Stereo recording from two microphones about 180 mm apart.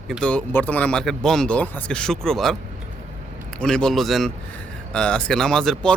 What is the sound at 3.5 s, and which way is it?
Speech, 5° left (ahead or behind).